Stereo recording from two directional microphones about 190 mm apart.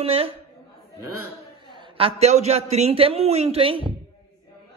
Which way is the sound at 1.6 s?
25° right (ahead or behind).